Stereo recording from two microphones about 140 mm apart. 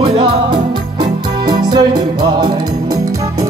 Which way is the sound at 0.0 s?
35° right (ahead or behind).